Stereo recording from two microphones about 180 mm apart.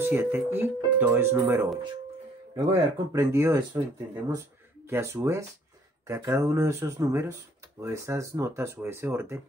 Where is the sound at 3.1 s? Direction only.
15° right (ahead or behind).